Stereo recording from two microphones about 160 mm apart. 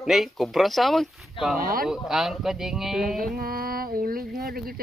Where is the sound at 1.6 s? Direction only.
65° right (ahead or behind).